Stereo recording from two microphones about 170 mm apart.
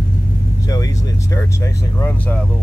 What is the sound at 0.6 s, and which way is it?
Speech, 20° left (ahead or behind).